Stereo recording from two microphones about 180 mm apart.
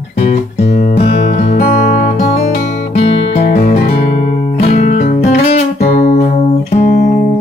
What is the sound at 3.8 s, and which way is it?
Music, 40° left (ahead or behind).